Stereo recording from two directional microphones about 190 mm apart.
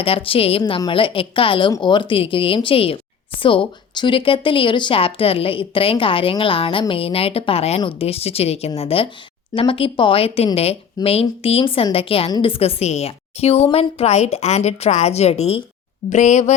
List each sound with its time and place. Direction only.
0.0 s a woman's voice: 30° left (ahead or behind)